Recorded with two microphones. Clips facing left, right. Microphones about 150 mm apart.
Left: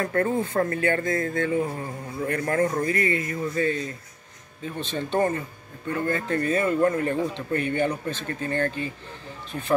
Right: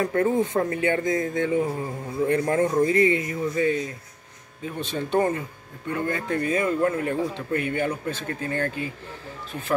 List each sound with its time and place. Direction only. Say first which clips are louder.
0.0 s speech: right 2 dB; 10° right (ahead or behind)